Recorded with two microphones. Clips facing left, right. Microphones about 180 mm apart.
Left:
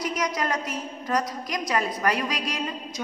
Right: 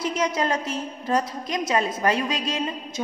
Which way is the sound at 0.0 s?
25° right (ahead or behind).